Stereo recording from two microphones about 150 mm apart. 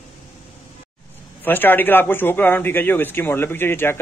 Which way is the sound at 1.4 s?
15° left (ahead or behind).